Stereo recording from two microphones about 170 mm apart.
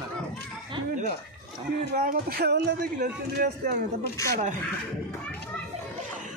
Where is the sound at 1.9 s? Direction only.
60° right (ahead or behind).